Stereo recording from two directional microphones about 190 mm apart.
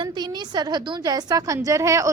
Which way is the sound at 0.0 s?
20° right (ahead or behind).